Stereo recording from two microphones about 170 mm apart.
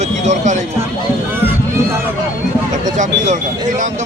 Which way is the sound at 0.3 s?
45° right (ahead or behind).